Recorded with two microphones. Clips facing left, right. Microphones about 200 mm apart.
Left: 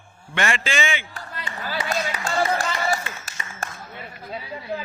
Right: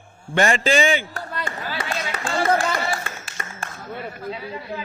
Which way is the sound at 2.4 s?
50° right (ahead or behind).